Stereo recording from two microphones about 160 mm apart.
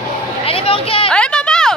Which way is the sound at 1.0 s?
5° left (ahead or behind).